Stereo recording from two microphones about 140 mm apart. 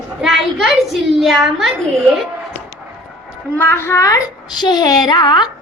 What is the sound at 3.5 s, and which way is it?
A child's voice, 15° left (ahead or behind).